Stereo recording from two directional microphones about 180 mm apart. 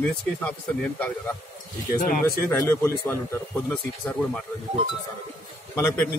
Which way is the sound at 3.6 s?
5° left (ahead or behind).